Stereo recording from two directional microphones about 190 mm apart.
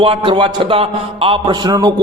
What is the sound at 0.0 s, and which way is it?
A man's voice, 30° right (ahead or behind).